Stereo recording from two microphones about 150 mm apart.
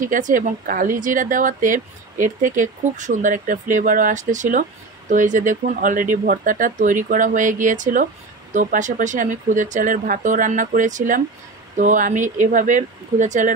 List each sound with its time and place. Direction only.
0.0 s speech: 60° right (ahead or behind)